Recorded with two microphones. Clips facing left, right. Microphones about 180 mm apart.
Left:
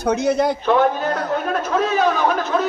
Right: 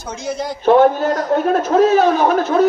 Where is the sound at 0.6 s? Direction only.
45° right (ahead or behind).